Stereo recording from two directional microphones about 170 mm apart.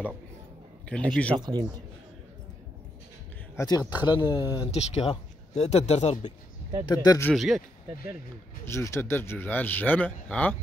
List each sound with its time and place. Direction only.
0.8 s speech: 5° left (ahead or behind)
1.3 s speech: 25° right (ahead or behind)
3.5 s speech: 20° left (ahead or behind)
4.6 s speech: 40° left (ahead or behind)
6.9 s speech: 25° left (ahead or behind)
7.3 s speech: centre (ahead or behind)
8.6 s speech: 15° left (ahead or behind)